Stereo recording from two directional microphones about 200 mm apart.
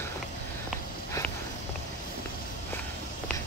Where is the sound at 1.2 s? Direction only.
15° left (ahead or behind).